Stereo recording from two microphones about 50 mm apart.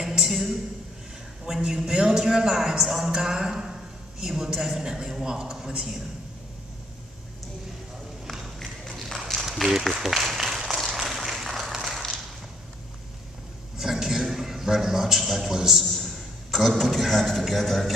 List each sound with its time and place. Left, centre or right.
0.2 s a woman's voice: centre
1.4 s a man's voice: centre
2.8 s speech: centre
3.1 s a man's voice: centre
8.3 s a sound: centre
13.7 s a sound: centre